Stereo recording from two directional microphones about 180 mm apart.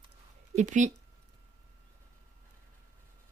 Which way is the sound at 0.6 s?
45° right (ahead or behind).